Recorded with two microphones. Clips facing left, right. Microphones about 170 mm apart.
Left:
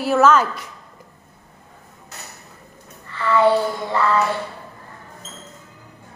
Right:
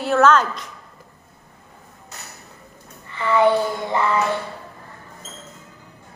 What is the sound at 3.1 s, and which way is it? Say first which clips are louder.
Child singing: left 1 dB; 20° right (ahead or behind).